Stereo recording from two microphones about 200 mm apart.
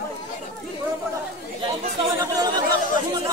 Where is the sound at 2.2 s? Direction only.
20° right (ahead or behind).